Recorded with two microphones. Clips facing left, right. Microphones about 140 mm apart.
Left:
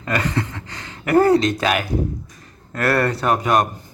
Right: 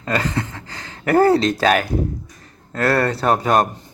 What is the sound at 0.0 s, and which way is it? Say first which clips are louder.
A man's voice: even; 30° right (ahead or behind).